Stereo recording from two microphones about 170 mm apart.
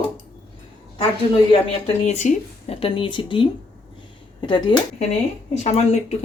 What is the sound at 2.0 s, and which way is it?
Speech, 45° left (ahead or behind).